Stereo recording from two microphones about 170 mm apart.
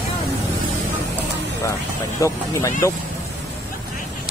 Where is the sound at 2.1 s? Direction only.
15° left (ahead or behind).